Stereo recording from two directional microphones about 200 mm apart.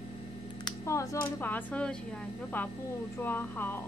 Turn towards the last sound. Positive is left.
turn(degrees=10)  # may be behind; listen again after turning